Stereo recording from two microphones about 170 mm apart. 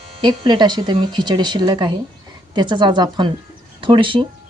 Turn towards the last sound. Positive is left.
turn(degrees=-30)  # may be behind; listen again after turning